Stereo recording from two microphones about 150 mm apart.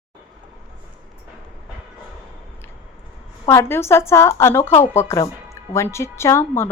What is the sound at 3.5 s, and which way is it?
A woman's voice, 20° left (ahead or behind).